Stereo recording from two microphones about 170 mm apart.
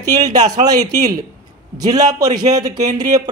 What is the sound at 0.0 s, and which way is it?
Speech, 20° right (ahead or behind).